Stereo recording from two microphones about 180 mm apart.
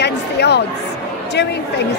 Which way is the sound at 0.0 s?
70° left (ahead or behind).